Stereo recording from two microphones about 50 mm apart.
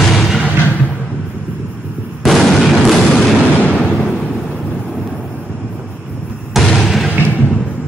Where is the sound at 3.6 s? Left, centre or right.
Left.